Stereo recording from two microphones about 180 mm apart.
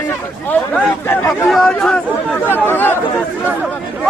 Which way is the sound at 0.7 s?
10° left (ahead or behind).